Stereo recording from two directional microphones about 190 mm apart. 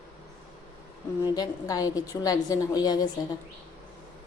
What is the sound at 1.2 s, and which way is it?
A woman's voice, 20° left (ahead or behind).